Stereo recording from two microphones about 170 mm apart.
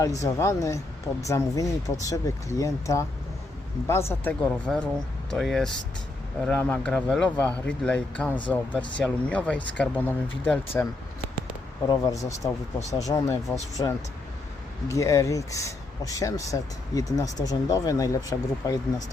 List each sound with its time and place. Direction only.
0.2 s speech: 15° left (ahead or behind)
8.5 s speech: 10° right (ahead or behind)
9.0 s speech: 10° left (ahead or behind)
11.9 s speech: 20° left (ahead or behind)